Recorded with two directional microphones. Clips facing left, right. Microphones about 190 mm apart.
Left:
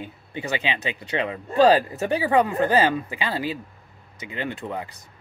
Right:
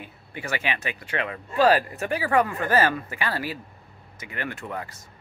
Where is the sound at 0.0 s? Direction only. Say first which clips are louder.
Left 4 dB; 20° left (ahead or behind).